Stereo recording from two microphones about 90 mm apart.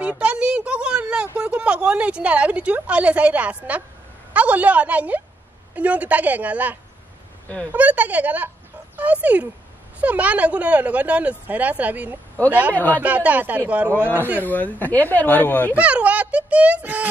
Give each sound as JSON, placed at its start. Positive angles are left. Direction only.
{"t": 0.2, "sound": "a sound", "side_deg": -10}
{"t": 4.3, "sound": "a woman's voice", "side_deg": -15}
{"t": 12.7, "sound": "speech", "side_deg": 15}
{"t": 13.0, "sound": "speech", "side_deg": -15}
{"t": 14.4, "sound": "speech", "side_deg": 20}
{"t": 15.7, "sound": "speech", "side_deg": -15}